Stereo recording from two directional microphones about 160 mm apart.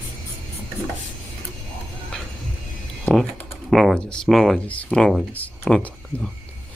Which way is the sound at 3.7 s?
Centre (ahead or behind).